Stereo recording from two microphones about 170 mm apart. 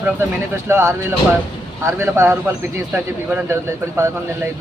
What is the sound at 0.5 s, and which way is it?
Speech, 15° right (ahead or behind).